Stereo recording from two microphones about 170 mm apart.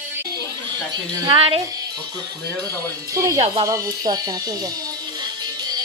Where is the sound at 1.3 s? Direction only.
30° right (ahead or behind).